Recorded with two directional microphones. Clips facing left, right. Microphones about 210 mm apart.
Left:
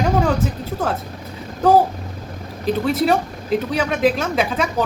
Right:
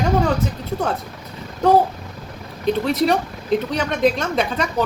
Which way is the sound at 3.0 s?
5° left (ahead or behind).